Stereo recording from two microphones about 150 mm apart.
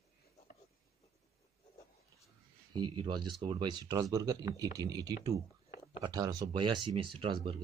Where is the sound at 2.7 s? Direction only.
35° right (ahead or behind).